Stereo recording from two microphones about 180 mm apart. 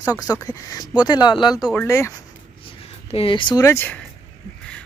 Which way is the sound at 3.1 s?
30° left (ahead or behind).